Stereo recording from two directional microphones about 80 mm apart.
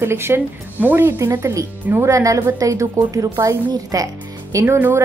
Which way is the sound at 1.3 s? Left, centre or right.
Right.